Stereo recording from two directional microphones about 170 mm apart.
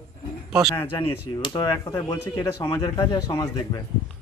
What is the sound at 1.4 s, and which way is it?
Speech, 25° left (ahead or behind).